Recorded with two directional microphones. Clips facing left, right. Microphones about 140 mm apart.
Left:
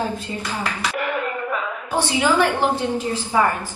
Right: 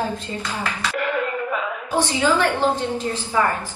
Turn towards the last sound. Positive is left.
turn(degrees=10)  # may be behind; listen again after turning